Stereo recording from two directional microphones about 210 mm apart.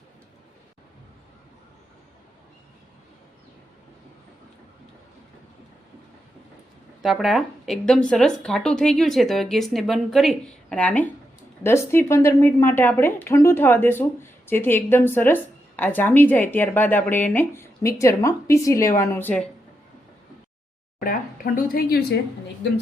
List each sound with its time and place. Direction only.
7.0 s speech: centre (ahead or behind)
21.0 s speech: 40° left (ahead or behind)